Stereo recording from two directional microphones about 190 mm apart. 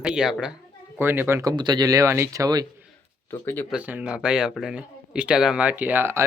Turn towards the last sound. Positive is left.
turn(degrees=-10)  # may be behind; listen again after turning